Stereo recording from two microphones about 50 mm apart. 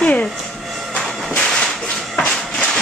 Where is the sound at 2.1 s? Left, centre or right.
Left.